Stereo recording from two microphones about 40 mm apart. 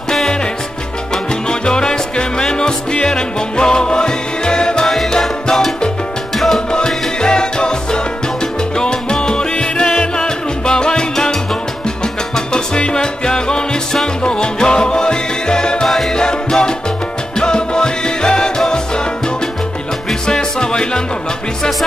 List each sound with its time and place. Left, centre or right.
1.1 s salsa music: centre
5.2 s music: centre
6.7 s music: centre
12.4 s salsa music: centre
12.9 s music: centre
20.2 s music: centre